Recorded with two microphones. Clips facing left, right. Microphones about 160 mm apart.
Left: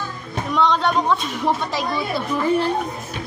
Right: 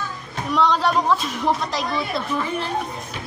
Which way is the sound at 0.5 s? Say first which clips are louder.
Even; centre (ahead or behind).